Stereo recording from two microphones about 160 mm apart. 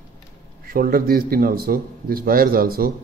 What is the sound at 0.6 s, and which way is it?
A man's voice, 65° right (ahead or behind).